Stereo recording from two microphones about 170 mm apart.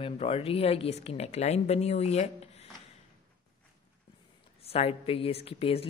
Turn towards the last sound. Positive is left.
turn(degrees=35)  # may be behind; listen again after turning